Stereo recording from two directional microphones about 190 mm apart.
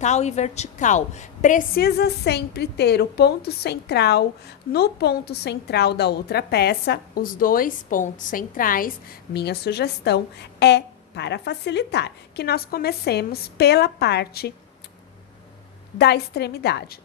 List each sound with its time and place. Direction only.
0.0 s a woman's voice: 35° left (ahead or behind); by 14.5 s 55° left (ahead or behind)
16.0 s a woman's voice: 60° left (ahead or behind)